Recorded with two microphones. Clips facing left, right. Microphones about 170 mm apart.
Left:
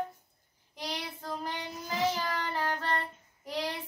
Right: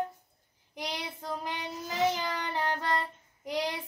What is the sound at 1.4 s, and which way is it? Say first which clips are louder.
Child singing: right 1 dB; 20° right (ahead or behind).